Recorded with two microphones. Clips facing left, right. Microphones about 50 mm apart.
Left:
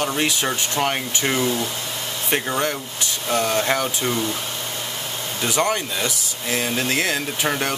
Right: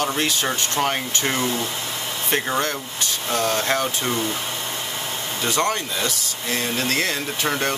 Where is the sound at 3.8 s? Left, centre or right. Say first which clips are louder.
Even; centre.